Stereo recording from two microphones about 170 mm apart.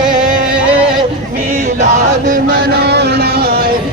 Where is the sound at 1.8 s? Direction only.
45° right (ahead or behind); by 3.6 s 70° right (ahead or behind).